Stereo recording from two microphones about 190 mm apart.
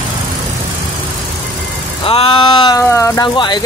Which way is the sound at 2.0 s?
30° left (ahead or behind).